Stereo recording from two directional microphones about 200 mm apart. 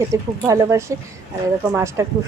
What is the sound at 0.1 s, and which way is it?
A woman's voice, 15° right (ahead or behind).